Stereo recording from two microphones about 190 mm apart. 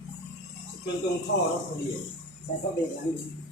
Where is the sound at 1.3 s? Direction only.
60° left (ahead or behind).